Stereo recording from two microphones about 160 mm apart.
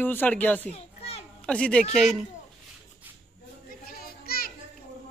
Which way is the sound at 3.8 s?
70° left (ahead or behind).